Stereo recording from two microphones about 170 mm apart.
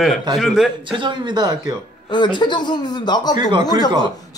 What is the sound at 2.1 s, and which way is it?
Speech, 25° left (ahead or behind).